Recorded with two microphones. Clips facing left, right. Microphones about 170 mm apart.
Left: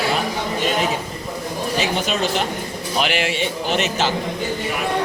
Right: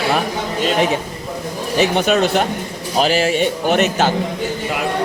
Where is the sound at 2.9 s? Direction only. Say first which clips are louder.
Right 6 dB; 40° right (ahead or behind).